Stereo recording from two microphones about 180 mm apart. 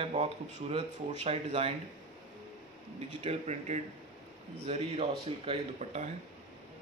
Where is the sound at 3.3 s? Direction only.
40° right (ahead or behind).